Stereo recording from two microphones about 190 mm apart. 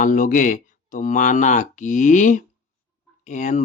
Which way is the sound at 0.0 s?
45° left (ahead or behind).